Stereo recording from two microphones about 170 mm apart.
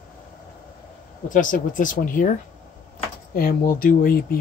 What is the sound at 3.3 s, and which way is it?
Speech, 60° left (ahead or behind).